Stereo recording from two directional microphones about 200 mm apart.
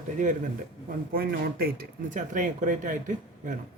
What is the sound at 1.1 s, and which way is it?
Speech, 50° right (ahead or behind).